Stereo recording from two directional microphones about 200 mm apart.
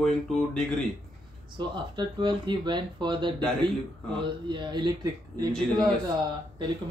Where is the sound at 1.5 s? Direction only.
25° right (ahead or behind).